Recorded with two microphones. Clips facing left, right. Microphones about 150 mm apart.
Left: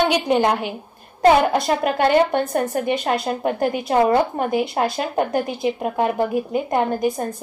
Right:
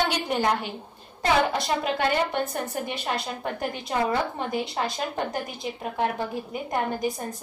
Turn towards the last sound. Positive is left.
turn(degrees=50)  # may be behind; listen again after turning